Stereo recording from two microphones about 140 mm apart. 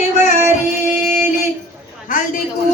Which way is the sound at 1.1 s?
60° left (ahead or behind).